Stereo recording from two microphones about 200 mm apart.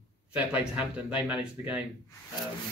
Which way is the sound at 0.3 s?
5° right (ahead or behind).